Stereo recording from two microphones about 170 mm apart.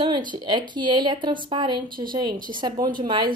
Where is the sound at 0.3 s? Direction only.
25° right (ahead or behind).